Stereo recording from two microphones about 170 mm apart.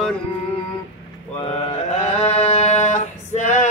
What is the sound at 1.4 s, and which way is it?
Mantra, 35° left (ahead or behind).